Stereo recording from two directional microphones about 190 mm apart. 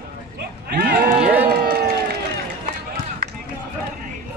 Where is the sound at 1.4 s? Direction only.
55° right (ahead or behind).